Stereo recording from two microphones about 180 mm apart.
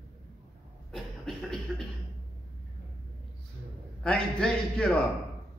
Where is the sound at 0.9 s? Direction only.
Centre (ahead or behind).